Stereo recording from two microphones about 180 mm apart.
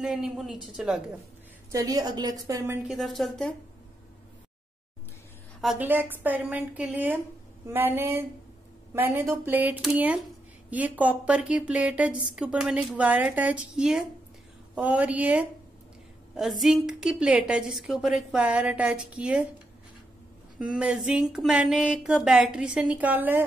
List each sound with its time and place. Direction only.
0.0 s a woman's voice: centre (ahead or behind)
1.7 s a woman's voice: 20° right (ahead or behind)
2.9 s a woman's voice: centre (ahead or behind)
5.6 s a woman's voice: 5° right (ahead or behind)
20.5 s a woman's voice: 5° right (ahead or behind)